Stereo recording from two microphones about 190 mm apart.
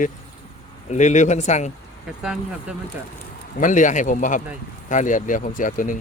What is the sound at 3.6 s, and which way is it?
Speech, 40° left (ahead or behind).